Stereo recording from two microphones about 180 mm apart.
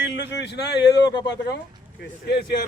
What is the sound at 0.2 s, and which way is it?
Speech, 75° left (ahead or behind).